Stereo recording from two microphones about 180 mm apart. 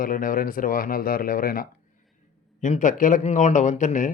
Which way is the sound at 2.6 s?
40° left (ahead or behind).